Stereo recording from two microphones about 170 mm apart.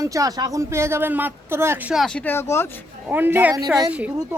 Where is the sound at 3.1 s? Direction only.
10° right (ahead or behind).